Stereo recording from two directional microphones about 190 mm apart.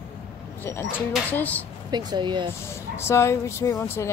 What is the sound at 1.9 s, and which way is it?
Speech, 20° right (ahead or behind).